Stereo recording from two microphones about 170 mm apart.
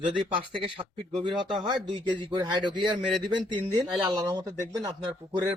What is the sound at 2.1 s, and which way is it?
Speech, 25° right (ahead or behind).